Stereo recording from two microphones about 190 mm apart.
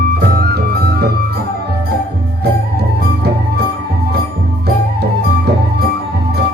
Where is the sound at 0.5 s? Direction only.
55° right (ahead or behind).